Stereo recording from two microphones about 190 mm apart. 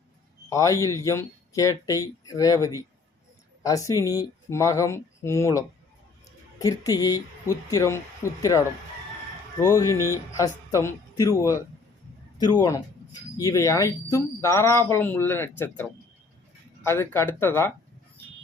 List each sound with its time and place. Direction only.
0.5 s a woman's voice: 15° left (ahead or behind)